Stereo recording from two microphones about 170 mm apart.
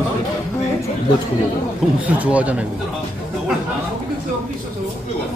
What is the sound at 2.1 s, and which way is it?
Speech, 10° right (ahead or behind).